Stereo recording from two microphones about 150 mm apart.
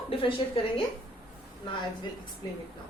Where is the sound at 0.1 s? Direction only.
35° left (ahead or behind).